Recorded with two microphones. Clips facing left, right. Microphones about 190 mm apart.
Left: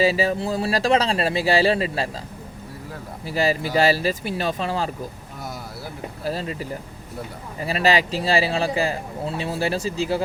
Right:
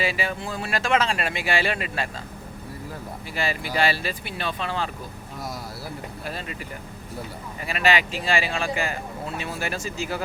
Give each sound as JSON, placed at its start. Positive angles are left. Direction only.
{"t": 0.0, "sound": "speech", "side_deg": 35}
{"t": 3.2, "sound": "speech", "side_deg": 35}
{"t": 6.2, "sound": "speech", "side_deg": 35}